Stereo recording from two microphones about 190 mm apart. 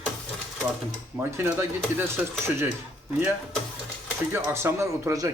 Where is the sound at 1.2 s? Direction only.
10° right (ahead or behind).